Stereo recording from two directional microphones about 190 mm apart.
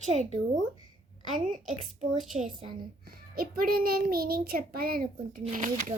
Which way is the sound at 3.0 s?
50° right (ahead or behind).